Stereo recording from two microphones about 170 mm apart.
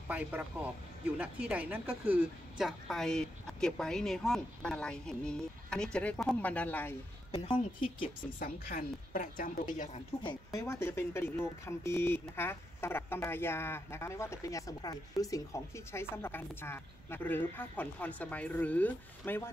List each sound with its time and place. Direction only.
0.1 s speech: 10° right (ahead or behind); by 7.0 s 10° left (ahead or behind)
7.2 s speech: 30° left (ahead or behind)
8.4 s a woman's voice: 60° left (ahead or behind)
10.2 s speech: 20° left (ahead or behind)